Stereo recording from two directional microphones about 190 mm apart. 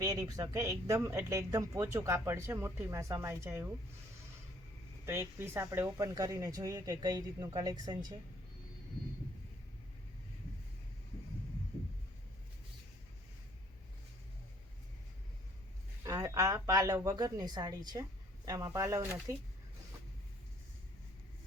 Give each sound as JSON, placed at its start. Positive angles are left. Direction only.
{"t": 0.0, "sound": "speech", "side_deg": -20}
{"t": 5.0, "sound": "speech", "side_deg": -15}
{"t": 16.0, "sound": "speech", "side_deg": -15}